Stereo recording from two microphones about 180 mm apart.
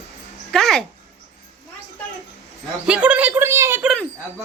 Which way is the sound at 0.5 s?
5° left (ahead or behind).